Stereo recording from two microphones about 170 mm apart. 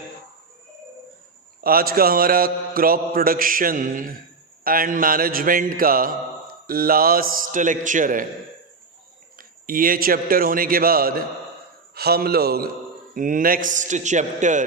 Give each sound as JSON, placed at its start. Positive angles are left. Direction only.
{"t": 1.6, "sound": "mantra", "side_deg": -60}
{"t": 9.4, "sound": "mantra", "side_deg": -55}
{"t": 11.9, "sound": "a man's voice", "side_deg": -65}
{"t": 13.1, "sound": "a man's voice", "side_deg": -50}